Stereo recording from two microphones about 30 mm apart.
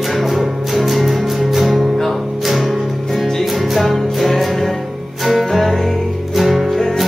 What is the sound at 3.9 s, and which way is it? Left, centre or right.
Music, centre.